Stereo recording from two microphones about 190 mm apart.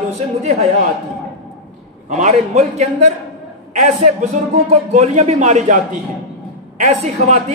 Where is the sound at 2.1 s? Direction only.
35° right (ahead or behind).